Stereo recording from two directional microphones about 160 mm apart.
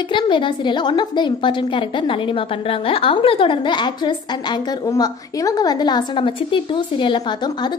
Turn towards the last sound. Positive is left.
turn(degrees=25)  # may be behind; listen again after turning